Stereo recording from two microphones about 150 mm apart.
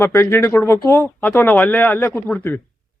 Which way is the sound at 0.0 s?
20° left (ahead or behind).